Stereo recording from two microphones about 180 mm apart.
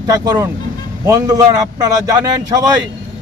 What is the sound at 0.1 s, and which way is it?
Speech, 25° right (ahead or behind).